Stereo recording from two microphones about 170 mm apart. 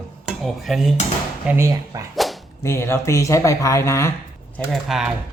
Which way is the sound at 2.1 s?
Centre (ahead or behind).